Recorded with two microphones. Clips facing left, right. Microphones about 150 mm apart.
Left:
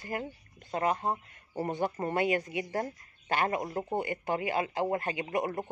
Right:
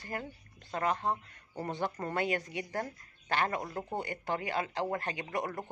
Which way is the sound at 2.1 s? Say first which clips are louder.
Left 4 dB; 10° left (ahead or behind).